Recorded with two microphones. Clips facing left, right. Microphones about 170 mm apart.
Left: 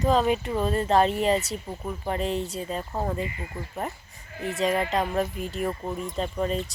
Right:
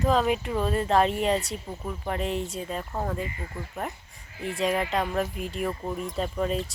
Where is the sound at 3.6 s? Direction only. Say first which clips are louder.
Left 1 dB; 20° left (ahead or behind).